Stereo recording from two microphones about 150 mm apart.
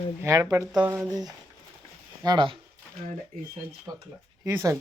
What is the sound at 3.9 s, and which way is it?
Speech, 25° right (ahead or behind).